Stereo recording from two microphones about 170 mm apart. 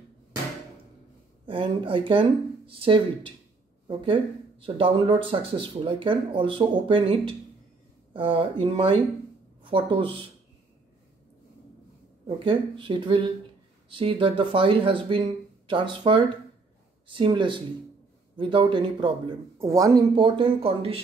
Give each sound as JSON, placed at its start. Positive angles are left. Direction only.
{"t": 1.4, "sound": "speech", "side_deg": -30}
{"t": 12.3, "sound": "speech", "side_deg": -30}